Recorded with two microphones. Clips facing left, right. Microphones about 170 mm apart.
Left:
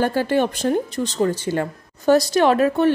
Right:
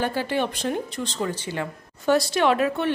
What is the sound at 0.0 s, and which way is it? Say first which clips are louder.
Speech: left 6 dB; 45° left (ahead or behind).